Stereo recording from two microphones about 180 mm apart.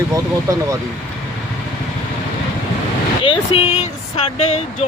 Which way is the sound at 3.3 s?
35° left (ahead or behind).